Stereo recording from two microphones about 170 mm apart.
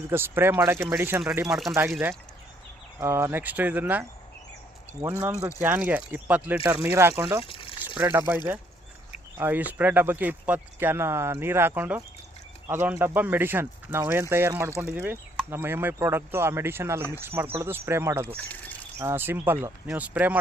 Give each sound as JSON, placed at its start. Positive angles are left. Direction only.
{"t": 0.1, "sound": "speech", "side_deg": -15}
{"t": 3.0, "sound": "speech", "side_deg": -15}
{"t": 5.0, "sound": "speech", "side_deg": -20}
{"t": 7.4, "sound": "water", "side_deg": 30}
{"t": 7.9, "sound": "speech", "side_deg": -10}
{"t": 9.4, "sound": "speech", "side_deg": -10}
{"t": 18.3, "sound": "speech", "side_deg": 10}
{"t": 18.9, "sound": "speech", "side_deg": -15}